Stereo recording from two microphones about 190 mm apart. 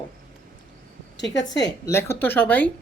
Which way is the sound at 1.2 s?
70° left (ahead or behind).